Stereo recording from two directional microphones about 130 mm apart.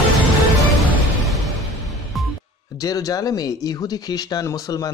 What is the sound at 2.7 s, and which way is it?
Speech, 30° left (ahead or behind).